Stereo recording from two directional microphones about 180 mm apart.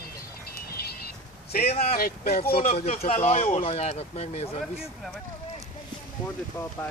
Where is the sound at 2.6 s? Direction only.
35° left (ahead or behind).